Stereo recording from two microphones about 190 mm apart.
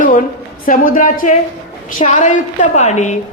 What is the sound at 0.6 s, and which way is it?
A woman's voice, 45° left (ahead or behind).